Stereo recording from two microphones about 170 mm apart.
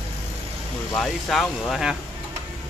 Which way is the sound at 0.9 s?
Centre (ahead or behind).